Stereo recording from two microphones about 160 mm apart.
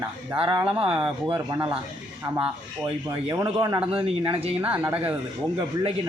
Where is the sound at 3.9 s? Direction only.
35° right (ahead or behind).